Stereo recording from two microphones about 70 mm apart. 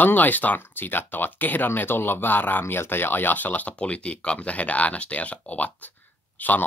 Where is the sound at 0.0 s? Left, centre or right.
Left.